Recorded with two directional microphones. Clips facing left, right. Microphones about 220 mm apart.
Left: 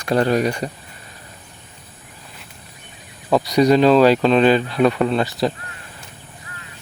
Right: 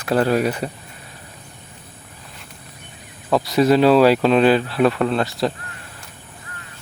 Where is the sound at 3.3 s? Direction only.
Centre (ahead or behind).